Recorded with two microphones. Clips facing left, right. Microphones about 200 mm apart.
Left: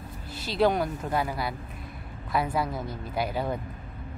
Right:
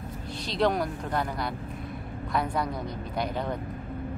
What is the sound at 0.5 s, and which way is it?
Speech, 5° left (ahead or behind).